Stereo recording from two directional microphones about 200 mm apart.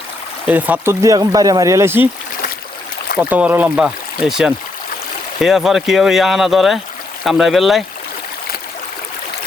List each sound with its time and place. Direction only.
0.4 s speech: 10° right (ahead or behind)
3.2 s speech: 10° right (ahead or behind)